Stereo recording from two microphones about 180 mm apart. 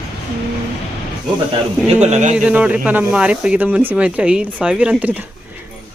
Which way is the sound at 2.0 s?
40° right (ahead or behind).